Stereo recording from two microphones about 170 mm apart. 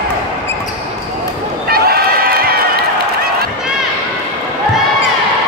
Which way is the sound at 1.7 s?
65° right (ahead or behind).